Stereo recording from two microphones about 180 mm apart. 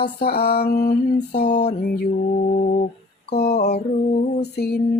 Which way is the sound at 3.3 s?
60° left (ahead or behind).